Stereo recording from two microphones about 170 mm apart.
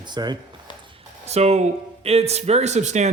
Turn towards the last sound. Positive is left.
turn(degrees=-40)  # may be behind; listen again after turning